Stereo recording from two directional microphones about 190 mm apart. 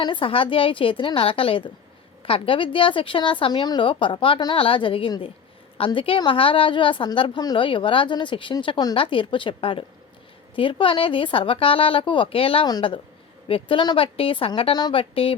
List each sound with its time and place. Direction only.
0.0 s a woman's voice: 25° left (ahead or behind)